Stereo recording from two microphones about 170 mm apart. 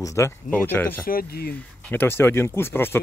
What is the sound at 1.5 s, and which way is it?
Speech, 10° left (ahead or behind).